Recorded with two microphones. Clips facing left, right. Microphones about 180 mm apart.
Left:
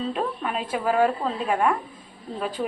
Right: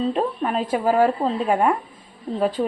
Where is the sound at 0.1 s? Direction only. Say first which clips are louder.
Right 5 dB; 35° right (ahead or behind).